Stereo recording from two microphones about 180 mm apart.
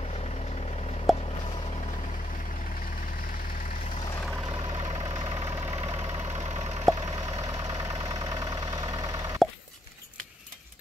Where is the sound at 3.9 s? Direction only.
25° left (ahead or behind).